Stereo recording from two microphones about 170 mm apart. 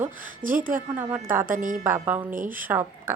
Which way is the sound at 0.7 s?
10° right (ahead or behind).